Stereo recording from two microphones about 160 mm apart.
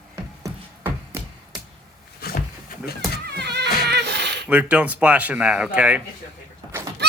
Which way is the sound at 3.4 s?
90° right.